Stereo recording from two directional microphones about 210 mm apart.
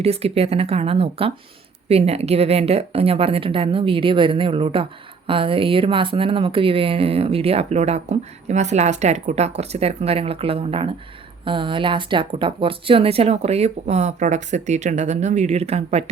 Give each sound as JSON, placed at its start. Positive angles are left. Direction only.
{"t": 0.0, "sound": "a woman's voice", "side_deg": -30}